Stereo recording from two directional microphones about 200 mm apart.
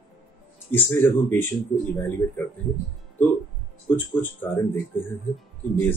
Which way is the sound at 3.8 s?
10° left (ahead or behind).